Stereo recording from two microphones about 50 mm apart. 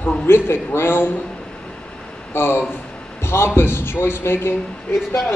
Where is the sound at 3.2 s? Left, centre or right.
Left.